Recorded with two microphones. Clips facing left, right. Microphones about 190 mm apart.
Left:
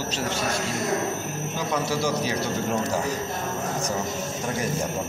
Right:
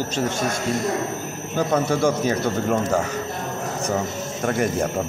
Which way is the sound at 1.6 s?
55° right (ahead or behind).